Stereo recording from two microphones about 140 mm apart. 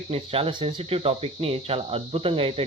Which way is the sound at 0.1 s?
45° right (ahead or behind).